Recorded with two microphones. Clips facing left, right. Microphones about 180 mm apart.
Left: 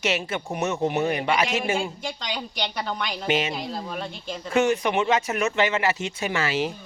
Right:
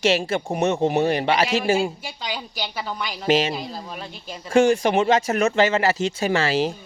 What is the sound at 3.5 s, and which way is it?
Speech, centre (ahead or behind).